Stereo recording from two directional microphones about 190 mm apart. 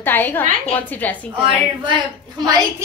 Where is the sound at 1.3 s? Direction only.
25° right (ahead or behind).